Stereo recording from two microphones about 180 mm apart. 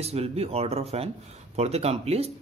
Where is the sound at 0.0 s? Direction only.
35° right (ahead or behind).